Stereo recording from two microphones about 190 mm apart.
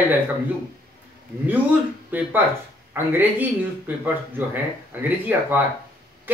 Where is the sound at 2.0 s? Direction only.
10° right (ahead or behind).